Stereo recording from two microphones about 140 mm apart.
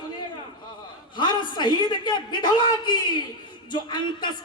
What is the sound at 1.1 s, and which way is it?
A man's voice, 35° left (ahead or behind).